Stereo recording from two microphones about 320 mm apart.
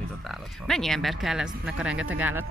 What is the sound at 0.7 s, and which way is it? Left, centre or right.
Speech, centre.